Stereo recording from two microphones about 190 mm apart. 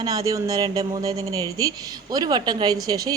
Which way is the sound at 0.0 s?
20° right (ahead or behind).